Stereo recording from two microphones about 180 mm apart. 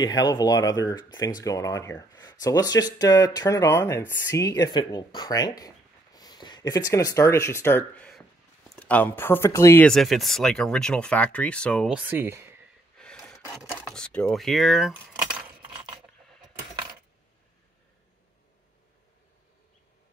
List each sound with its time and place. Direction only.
0.0 s speech: 20° left (ahead or behind)
9.8 s speech: centre (ahead or behind)
11.9 s speech: 10° right (ahead or behind)
12.9 s gasp: 5° left (ahead or behind)
13.7 s speech: 5° left (ahead or behind)
15.0 s keys jangling: 5° right (ahead or behind)